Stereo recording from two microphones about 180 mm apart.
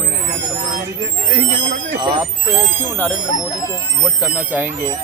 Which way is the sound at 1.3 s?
25° right (ahead or behind).